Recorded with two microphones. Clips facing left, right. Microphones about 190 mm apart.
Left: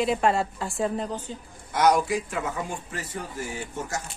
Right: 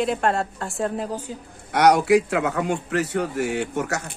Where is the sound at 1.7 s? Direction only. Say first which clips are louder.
Right 5 dB; 70° right (ahead or behind).